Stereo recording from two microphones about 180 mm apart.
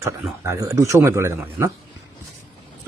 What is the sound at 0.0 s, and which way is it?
Speech, 15° right (ahead or behind).